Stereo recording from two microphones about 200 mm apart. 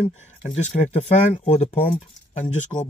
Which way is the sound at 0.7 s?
35° left (ahead or behind).